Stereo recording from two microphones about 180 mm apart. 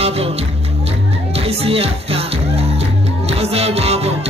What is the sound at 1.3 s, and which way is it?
Music, 35° right (ahead or behind).